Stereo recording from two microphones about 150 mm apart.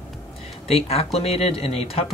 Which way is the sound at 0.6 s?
45° left (ahead or behind).